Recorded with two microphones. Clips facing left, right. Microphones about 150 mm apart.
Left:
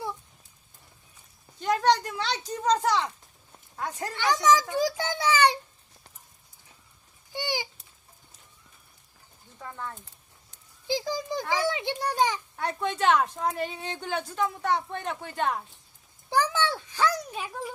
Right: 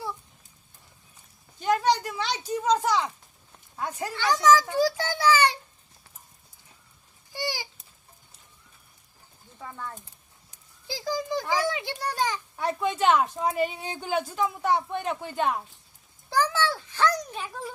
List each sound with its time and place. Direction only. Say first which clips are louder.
1.6 s speech: even; 5° right (ahead or behind)
4.2 s a child's voice: right 2 dB; 20° left (ahead or behind)
7.3 s a sound: left 1 dB; 15° left (ahead or behind)
10.8 s a child's voice: left 1 dB; 20° left (ahead or behind)
12.5 s speech: right 5 dB; 5° right (ahead or behind)
16.3 s a child's voice: even; 15° left (ahead or behind)
17.0 s a child's voice: right 1 dB; 5° left (ahead or behind)